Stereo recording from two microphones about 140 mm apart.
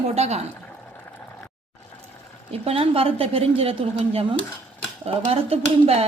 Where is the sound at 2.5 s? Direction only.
45° right (ahead or behind).